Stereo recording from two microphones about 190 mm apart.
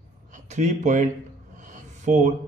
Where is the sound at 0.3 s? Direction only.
40° right (ahead or behind).